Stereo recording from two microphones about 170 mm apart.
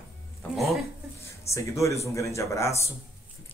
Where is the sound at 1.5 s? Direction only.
15° left (ahead or behind).